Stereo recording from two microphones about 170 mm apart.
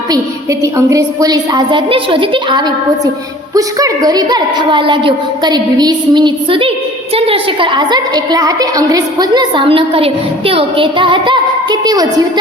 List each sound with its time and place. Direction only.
0.6 s a woman's voice: 20° right (ahead or behind)